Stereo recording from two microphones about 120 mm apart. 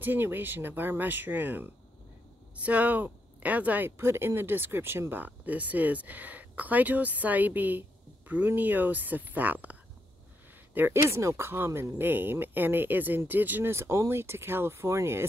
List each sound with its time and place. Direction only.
0.0 s speech: 15° right (ahead or behind)